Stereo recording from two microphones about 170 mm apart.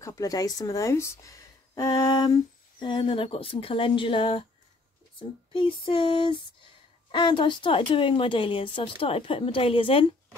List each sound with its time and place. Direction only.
0.0 s speech: 20° left (ahead or behind)
5.5 s a woman's voice: 30° left (ahead or behind)